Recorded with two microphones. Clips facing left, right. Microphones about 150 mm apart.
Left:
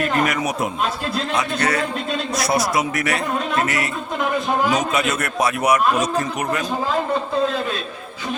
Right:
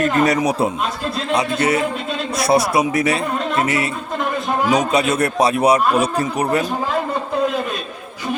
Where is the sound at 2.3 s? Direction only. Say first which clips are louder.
Right 6 dB; 30° right (ahead or behind).